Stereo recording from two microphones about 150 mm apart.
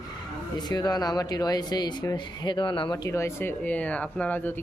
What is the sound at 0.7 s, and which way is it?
Speech, 25° left (ahead or behind).